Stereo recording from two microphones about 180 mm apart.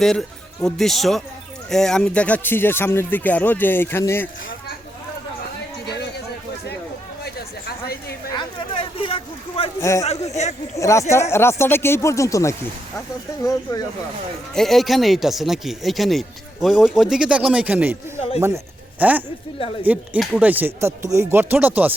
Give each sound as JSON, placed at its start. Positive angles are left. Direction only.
{"t": 0.0, "sound": "speech", "side_deg": 0}
{"t": 8.4, "sound": "a sound", "side_deg": 30}
{"t": 9.8, "sound": "speech", "side_deg": 15}
{"t": 10.1, "sound": "speech", "side_deg": 35}
{"t": 10.8, "sound": "speech", "side_deg": 15}
{"t": 14.5, "sound": "speech", "side_deg": 0}
{"t": 18.9, "sound": "speech", "side_deg": -10}